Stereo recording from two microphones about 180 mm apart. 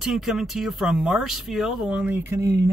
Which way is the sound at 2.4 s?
20° right (ahead or behind).